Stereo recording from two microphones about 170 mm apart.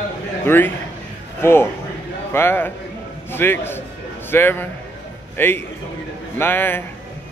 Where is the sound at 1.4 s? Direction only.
15° left (ahead or behind).